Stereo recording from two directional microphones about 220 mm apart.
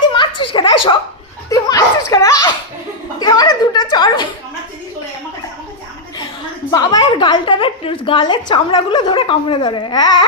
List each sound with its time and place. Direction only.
0.5 s a woman's voice: 20° left (ahead or behind)
1.5 s a sound: 15° left (ahead or behind)
6.7 s a woman's voice: 20° left (ahead or behind)